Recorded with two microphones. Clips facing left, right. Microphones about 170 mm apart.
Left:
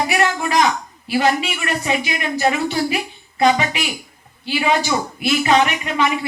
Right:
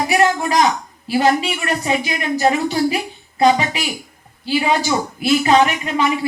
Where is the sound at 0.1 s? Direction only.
35° right (ahead or behind).